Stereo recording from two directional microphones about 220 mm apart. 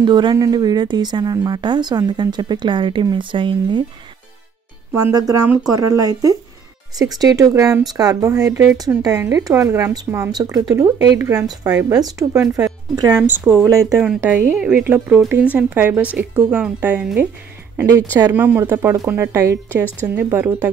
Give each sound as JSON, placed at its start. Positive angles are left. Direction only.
{"t": 0.0, "sound": "speech", "side_deg": -20}
{"t": 4.9, "sound": "speech", "side_deg": -15}